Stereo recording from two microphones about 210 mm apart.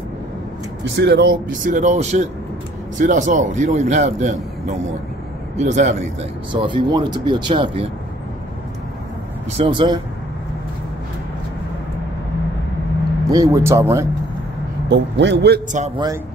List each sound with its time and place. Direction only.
0.9 s speech: 55° right (ahead or behind)
1.6 s a man's voice: 35° right (ahead or behind)
6.5 s speech: 20° right (ahead or behind)
9.6 s speech: 25° right (ahead or behind)
13.3 s speech: 15° right (ahead or behind)
14.9 s a man's voice: 55° right (ahead or behind)